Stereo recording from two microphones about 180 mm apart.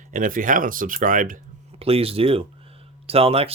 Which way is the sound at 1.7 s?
35° right (ahead or behind).